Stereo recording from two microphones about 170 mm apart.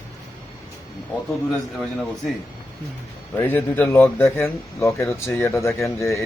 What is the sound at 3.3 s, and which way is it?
Speech, 10° left (ahead or behind).